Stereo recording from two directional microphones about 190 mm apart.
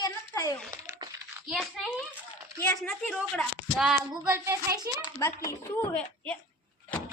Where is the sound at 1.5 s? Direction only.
5° right (ahead or behind).